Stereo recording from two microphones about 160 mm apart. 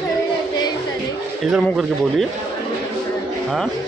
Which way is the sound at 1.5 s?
Centre (ahead or behind).